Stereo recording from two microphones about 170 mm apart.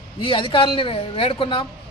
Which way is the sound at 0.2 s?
30° left (ahead or behind).